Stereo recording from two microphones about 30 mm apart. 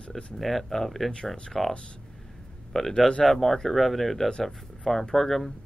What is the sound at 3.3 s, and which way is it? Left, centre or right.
Speech, centre.